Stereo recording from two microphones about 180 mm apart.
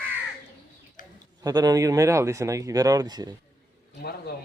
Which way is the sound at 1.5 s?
20° right (ahead or behind).